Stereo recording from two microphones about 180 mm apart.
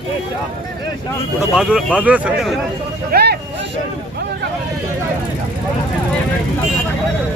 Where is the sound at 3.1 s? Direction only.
60° right (ahead or behind).